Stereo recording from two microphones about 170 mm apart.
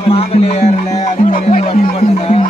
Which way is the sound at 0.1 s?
40° left (ahead or behind).